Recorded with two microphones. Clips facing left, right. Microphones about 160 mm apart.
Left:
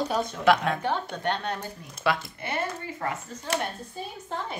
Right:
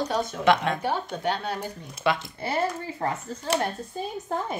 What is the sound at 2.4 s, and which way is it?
Speech, 30° right (ahead or behind).